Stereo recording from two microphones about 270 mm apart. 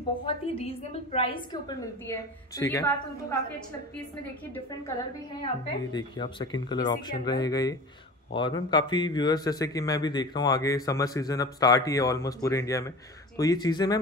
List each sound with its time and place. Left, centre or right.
0.3 s a woman's voice: left
5.4 s a man's voice: centre